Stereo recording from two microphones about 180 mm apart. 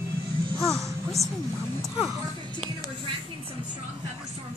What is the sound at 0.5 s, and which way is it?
Speech, centre (ahead or behind).